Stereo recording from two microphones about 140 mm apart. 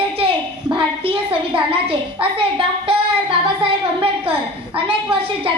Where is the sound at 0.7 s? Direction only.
40° right (ahead or behind).